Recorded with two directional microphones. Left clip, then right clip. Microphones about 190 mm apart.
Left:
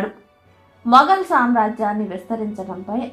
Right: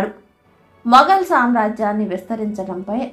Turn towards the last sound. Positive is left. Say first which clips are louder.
# right 3 dB
turn(degrees=-35)  # may be behind; listen again after turning